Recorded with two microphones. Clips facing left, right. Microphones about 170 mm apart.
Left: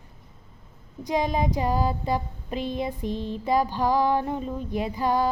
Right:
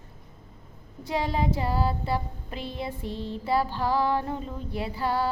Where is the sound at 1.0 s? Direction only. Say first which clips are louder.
Left 3 dB; 15° left (ahead or behind).